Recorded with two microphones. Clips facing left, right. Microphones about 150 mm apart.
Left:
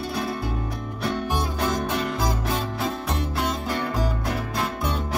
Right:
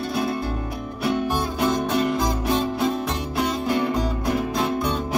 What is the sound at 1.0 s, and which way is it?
Music, 10° right (ahead or behind).